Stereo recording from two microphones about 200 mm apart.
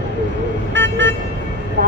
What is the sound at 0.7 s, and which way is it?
Vehicle, 65° right (ahead or behind).